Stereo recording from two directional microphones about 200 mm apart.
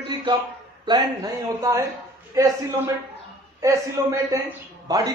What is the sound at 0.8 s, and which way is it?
A man's voice, 20° right (ahead or behind).